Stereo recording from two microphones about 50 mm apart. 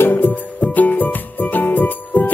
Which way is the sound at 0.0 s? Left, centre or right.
Left.